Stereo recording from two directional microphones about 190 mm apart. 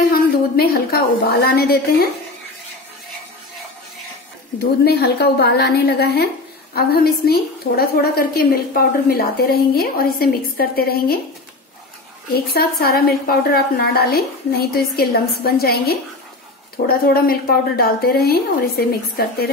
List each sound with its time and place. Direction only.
0.1 s a woman's voice: 55° left (ahead or behind)
4.8 s a woman's voice: 55° left (ahead or behind)
12.5 s a woman's voice: 50° left (ahead or behind)